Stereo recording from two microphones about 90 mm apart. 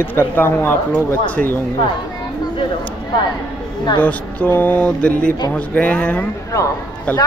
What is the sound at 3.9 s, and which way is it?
Speech, 20° left (ahead or behind).